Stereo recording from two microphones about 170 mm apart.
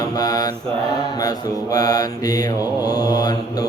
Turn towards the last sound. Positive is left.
turn(degrees=20)  # may be behind; listen again after turning